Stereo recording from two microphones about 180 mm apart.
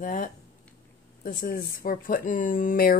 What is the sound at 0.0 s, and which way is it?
Speech, 45° left (ahead or behind).